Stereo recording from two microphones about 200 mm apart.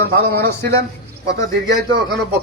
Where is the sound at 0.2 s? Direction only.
50° right (ahead or behind).